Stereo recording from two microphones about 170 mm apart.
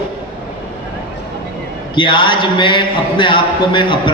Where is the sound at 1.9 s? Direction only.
30° left (ahead or behind).